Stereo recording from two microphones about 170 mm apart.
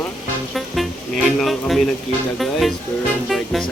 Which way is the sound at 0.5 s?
Centre (ahead or behind).